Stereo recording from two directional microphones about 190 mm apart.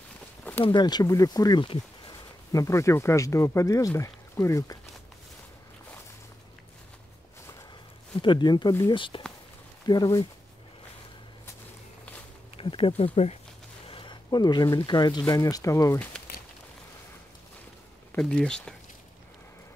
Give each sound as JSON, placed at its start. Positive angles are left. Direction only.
{"t": 0.4, "sound": "a sound", "side_deg": 10}
{"t": 0.7, "sound": "speech", "side_deg": 25}
{"t": 8.2, "sound": "speech", "side_deg": 25}
{"t": 12.5, "sound": "speech", "side_deg": 30}
{"t": 18.1, "sound": "speech", "side_deg": 5}